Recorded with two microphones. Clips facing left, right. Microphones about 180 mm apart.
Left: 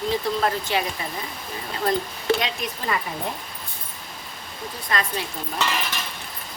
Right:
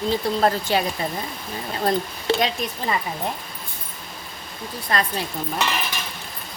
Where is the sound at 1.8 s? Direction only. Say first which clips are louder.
Right 1 dB; 30° right (ahead or behind).